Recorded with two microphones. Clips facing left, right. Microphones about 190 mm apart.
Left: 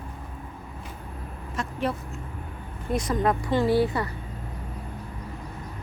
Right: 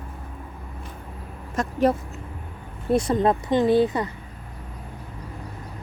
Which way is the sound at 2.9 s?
30° right (ahead or behind).